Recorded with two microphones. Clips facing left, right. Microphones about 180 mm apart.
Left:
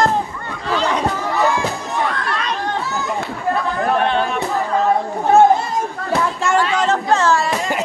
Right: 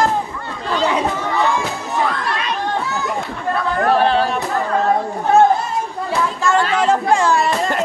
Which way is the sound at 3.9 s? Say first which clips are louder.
Right 3 dB; 35° right (ahead or behind).